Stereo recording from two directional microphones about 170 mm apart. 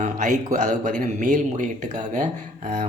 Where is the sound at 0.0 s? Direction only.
45° right (ahead or behind).